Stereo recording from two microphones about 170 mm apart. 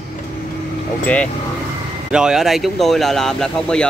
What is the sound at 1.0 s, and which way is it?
Speech, 10° left (ahead or behind).